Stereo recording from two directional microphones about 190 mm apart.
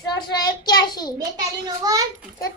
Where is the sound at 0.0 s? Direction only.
20° left (ahead or behind).